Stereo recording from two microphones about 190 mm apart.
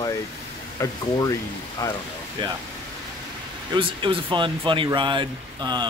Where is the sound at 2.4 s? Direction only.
25° right (ahead or behind).